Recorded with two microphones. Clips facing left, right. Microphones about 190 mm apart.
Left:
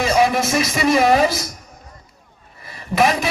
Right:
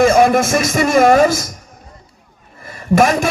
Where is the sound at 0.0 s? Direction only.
50° right (ahead or behind).